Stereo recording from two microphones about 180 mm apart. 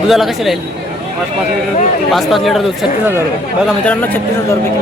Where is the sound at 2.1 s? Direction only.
Centre (ahead or behind).